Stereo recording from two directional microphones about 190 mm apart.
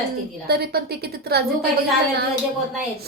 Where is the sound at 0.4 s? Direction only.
55° right (ahead or behind).